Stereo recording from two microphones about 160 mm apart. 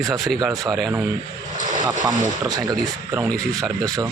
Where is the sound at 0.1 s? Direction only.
Centre (ahead or behind).